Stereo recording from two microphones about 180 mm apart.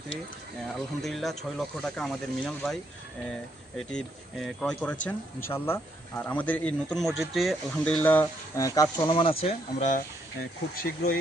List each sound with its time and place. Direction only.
1.0 s speech: centre (ahead or behind)
3.8 s speech: centre (ahead or behind)
8.0 s speech: 10° left (ahead or behind); by 10.0 s 40° left (ahead or behind)
10.8 s speech: 60° left (ahead or behind)